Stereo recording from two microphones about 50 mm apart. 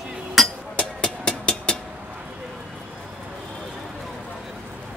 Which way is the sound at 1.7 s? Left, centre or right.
Centre.